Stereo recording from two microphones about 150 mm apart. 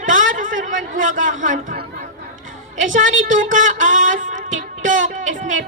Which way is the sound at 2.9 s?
60° right (ahead or behind).